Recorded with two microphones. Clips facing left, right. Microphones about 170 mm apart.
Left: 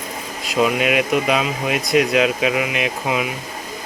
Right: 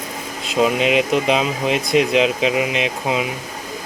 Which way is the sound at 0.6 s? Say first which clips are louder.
Right 1 dB; 25° right (ahead or behind).